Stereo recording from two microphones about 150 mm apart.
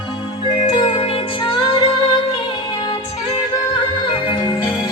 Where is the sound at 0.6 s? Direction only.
40° left (ahead or behind).